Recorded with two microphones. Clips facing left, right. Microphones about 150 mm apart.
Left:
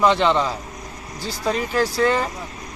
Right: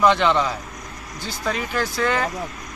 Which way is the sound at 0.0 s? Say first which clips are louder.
Even; 30° left (ahead or behind).